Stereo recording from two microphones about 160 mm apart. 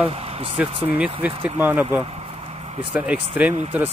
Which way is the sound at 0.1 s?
40° right (ahead or behind).